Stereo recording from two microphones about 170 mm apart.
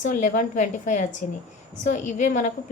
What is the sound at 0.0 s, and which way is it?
A woman's voice, 50° left (ahead or behind).